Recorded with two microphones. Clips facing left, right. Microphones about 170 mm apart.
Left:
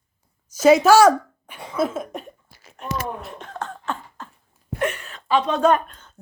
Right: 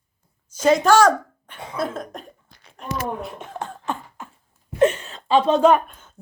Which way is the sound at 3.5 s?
15° right (ahead or behind).